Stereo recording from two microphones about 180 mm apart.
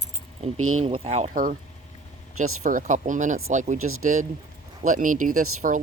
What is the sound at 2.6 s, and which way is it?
Speech, 45° right (ahead or behind).